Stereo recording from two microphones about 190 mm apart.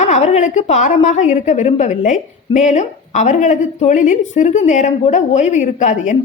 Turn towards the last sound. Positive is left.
turn(degrees=40)  # may be behind; listen again after turning